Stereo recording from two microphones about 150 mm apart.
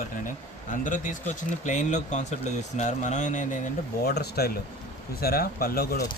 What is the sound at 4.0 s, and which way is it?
Speech, 90° left.